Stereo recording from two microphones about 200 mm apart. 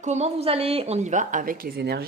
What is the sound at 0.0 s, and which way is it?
A woman's voice, 35° right (ahead or behind).